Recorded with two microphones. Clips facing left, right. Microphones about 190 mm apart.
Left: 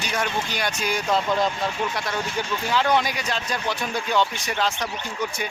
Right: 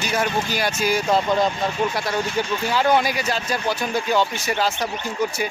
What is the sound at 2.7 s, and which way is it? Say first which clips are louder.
A man's voice: right 2 dB; 5° right (ahead or behind).